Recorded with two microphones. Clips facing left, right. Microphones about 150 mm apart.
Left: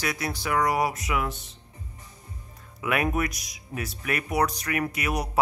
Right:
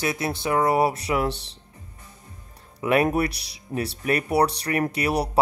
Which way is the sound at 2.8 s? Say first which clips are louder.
Right 5 dB; 30° right (ahead or behind).